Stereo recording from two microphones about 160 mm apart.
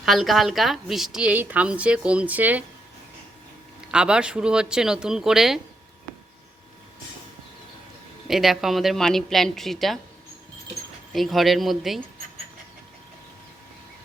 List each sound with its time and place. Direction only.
0.0 s a woman's voice: centre (ahead or behind)
3.9 s a woman's voice: 5° right (ahead or behind)
8.3 s a woman's voice: centre (ahead or behind)
11.1 s a woman's voice: centre (ahead or behind)